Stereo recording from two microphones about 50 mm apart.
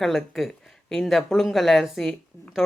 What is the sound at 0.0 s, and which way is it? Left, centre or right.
Speech, centre.